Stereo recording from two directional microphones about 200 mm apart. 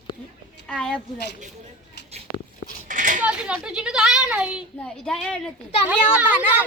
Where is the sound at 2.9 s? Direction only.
40° right (ahead or behind).